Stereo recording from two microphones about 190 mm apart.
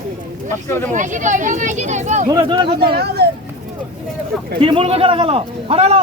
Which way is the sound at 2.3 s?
25° right (ahead or behind).